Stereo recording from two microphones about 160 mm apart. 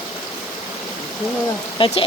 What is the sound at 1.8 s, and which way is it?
Speech, 35° left (ahead or behind).